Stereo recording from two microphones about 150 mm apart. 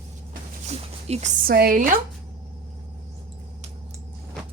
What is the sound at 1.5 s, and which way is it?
Speech, 85° right.